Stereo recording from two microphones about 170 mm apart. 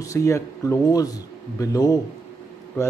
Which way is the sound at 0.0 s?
20° left (ahead or behind).